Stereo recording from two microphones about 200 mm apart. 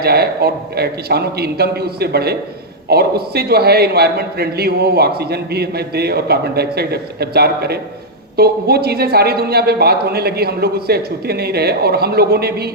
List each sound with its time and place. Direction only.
0.0 s a man's voice: 50° right (ahead or behind)